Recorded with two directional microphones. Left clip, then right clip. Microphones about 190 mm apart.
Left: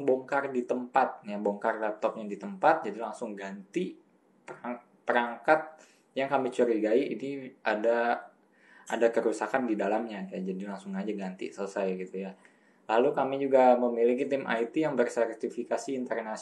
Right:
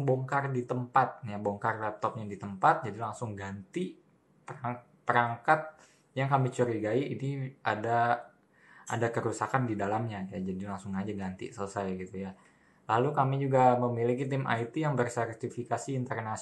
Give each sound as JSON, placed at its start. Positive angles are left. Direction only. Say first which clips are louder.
{"t": 0.0, "sound": "speech", "louder": "left 2 dB", "side_deg": 0}